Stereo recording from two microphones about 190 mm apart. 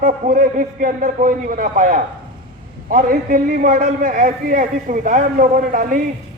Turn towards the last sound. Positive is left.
turn(degrees=-45)  # may be behind; listen again after turning